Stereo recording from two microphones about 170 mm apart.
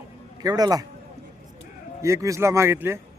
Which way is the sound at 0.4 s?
20° right (ahead or behind).